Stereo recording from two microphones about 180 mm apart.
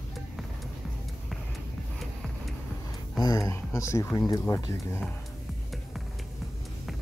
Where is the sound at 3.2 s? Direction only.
20° left (ahead or behind).